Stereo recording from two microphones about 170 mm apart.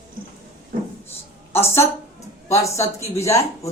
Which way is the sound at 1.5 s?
15° left (ahead or behind).